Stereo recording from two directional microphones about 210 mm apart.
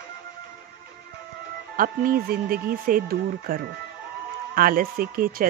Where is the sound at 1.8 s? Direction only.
45° right (ahead or behind).